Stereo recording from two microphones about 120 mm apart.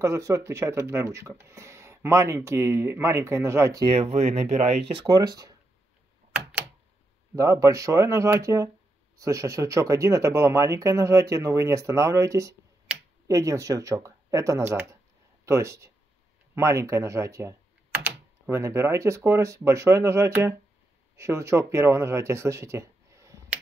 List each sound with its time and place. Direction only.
0.0 s speech: 25° right (ahead or behind)
3.8 s speech: 60° right (ahead or behind)
5.0 s speech: 35° right (ahead or behind)
7.3 s speech: 25° right (ahead or behind)